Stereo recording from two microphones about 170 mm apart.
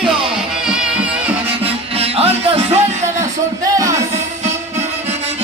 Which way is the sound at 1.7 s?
35° right (ahead or behind).